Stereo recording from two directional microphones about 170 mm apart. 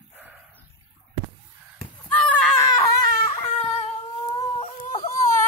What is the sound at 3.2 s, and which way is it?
Baby cry, 35° left (ahead or behind).